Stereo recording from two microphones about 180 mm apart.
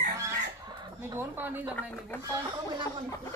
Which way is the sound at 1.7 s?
10° left (ahead or behind).